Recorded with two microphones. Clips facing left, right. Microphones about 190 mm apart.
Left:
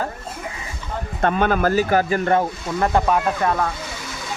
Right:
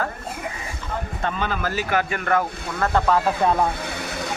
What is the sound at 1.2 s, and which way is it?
Speech, 55° left (ahead or behind).